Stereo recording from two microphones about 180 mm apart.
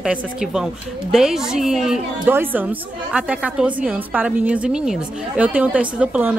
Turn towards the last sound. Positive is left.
turn(degrees=-5)  # may be behind; listen again after turning